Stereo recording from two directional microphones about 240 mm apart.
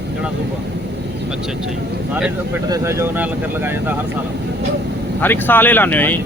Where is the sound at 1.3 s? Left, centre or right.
Centre.